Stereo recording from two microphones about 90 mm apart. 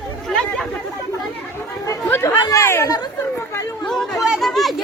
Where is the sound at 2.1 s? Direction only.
30° left (ahead or behind).